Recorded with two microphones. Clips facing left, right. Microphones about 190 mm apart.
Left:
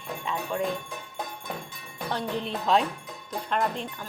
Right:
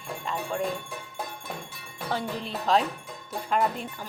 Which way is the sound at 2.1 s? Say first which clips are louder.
Left 1 dB; 5° right (ahead or behind).